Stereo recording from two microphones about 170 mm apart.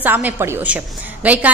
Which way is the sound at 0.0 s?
10° right (ahead or behind).